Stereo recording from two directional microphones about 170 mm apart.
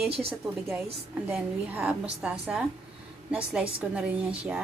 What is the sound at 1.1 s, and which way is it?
A woman's voice, 10° right (ahead or behind).